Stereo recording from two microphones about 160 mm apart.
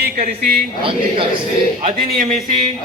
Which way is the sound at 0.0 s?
75° right (ahead or behind).